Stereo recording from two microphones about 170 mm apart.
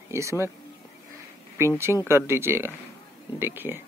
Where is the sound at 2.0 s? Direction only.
15° right (ahead or behind).